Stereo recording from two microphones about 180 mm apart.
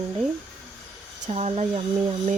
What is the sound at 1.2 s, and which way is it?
Speech, 35° right (ahead or behind).